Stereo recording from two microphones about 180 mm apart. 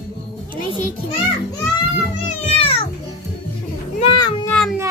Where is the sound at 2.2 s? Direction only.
35° left (ahead or behind).